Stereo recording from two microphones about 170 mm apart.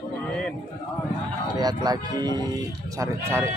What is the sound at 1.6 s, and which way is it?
Speech, 25° right (ahead or behind).